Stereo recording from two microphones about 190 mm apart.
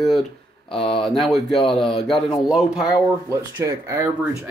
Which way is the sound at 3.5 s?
15° right (ahead or behind).